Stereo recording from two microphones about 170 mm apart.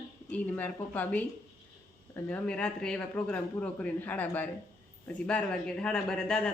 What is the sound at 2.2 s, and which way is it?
Speech, 5° left (ahead or behind).